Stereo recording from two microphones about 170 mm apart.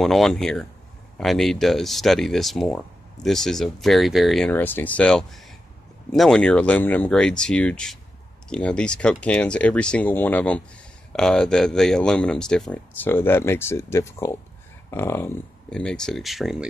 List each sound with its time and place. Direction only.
0.0 s speech: centre (ahead or behind)
4.5 s speech: 10° left (ahead or behind)